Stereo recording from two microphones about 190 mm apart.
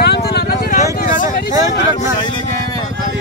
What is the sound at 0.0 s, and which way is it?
Vehicle, 60° left (ahead or behind).